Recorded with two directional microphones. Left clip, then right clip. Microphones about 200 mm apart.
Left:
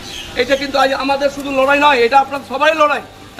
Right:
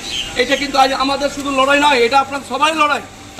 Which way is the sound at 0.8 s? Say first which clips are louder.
Even; 25° left (ahead or behind).